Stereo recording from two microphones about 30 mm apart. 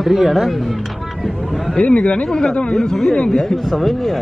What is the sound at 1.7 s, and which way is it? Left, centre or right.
Speech, left.